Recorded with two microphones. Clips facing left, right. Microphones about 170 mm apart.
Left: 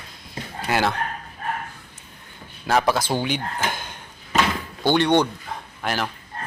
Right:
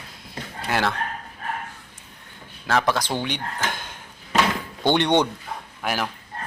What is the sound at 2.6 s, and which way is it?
Speech, 10° left (ahead or behind).